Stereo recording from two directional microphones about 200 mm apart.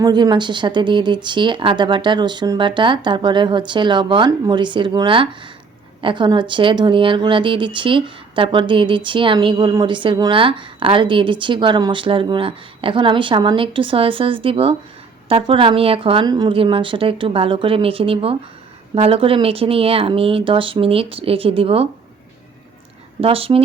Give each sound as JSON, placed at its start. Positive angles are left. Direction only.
{"t": 0.0, "sound": "speech", "side_deg": -20}
{"t": 23.2, "sound": "speech", "side_deg": -25}